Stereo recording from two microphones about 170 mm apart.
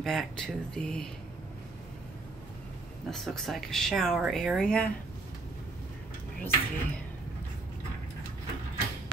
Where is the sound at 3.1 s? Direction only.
Centre (ahead or behind).